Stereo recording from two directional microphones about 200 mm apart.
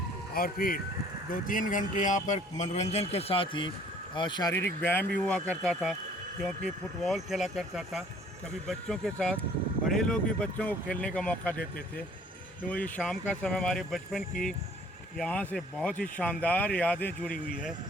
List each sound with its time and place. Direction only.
0.3 s a man's voice: 45° left (ahead or behind); by 11.6 s 5° left (ahead or behind)
12.6 s speech: 5° left (ahead or behind)
17.3 s speech: 45° left (ahead or behind)